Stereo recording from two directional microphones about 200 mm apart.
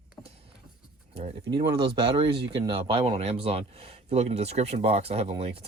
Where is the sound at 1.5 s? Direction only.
20° right (ahead or behind).